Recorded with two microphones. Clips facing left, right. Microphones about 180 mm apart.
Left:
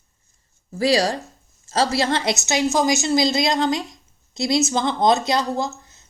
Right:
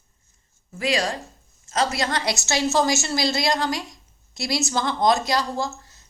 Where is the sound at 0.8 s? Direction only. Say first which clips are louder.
Left 5 dB; 35° left (ahead or behind).